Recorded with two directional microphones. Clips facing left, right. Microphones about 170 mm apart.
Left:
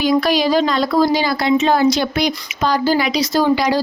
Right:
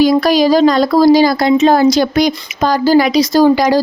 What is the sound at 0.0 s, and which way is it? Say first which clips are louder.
Speech: right 6 dB; 40° right (ahead or behind).